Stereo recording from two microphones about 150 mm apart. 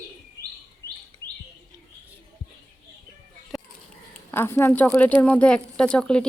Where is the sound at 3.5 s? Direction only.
Centre (ahead or behind).